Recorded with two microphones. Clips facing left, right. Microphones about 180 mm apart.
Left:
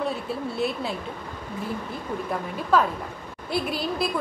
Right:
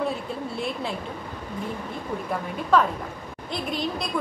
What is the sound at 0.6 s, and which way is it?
Speech, 5° left (ahead or behind).